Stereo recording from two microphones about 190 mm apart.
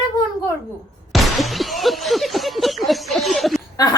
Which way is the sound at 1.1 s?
Centre (ahead or behind).